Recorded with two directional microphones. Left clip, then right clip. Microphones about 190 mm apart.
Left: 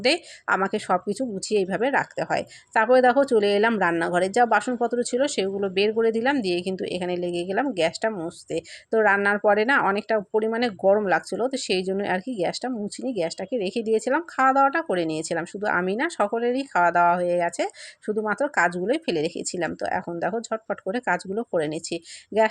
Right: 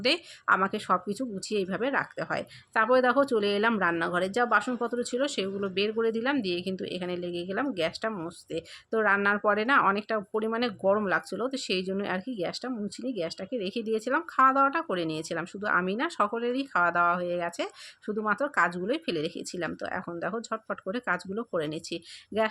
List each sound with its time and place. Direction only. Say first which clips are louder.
0.0 s speech: left 4 dB; 15° left (ahead or behind)